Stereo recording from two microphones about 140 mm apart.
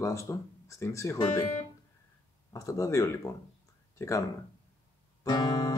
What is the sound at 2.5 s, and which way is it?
Speech, 25° left (ahead or behind).